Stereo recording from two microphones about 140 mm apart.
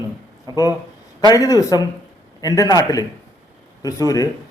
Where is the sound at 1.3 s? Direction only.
25° left (ahead or behind).